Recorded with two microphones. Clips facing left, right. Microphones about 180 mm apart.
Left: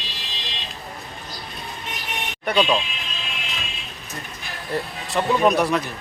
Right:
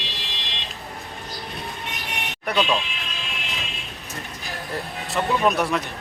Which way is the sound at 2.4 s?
Centre (ahead or behind).